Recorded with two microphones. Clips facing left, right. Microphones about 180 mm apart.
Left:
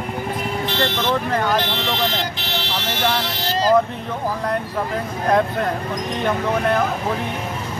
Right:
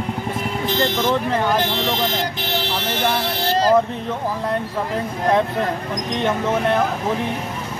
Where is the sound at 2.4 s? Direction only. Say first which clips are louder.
Right 3 dB; 50° right (ahead or behind).